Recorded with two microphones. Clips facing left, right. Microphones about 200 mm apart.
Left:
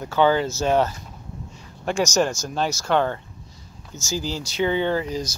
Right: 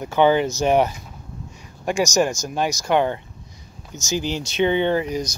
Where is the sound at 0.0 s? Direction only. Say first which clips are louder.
Right 2 dB; 20° right (ahead or behind).